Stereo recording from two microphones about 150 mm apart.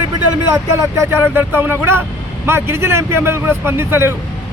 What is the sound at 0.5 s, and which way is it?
Speech, 15° right (ahead or behind).